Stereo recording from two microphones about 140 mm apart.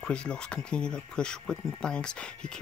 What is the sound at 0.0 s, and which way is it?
Speech, 5° left (ahead or behind).